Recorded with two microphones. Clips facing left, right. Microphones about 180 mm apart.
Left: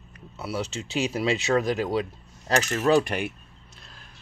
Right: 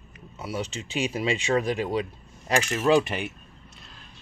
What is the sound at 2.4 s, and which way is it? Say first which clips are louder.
Speech: even; 10° right (ahead or behind).